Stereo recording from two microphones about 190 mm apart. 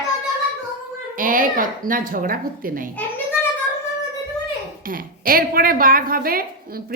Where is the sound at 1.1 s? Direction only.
45° right (ahead or behind).